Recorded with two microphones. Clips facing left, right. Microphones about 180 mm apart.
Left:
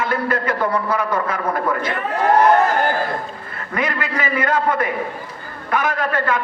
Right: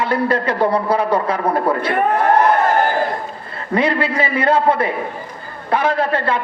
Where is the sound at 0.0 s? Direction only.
30° right (ahead or behind).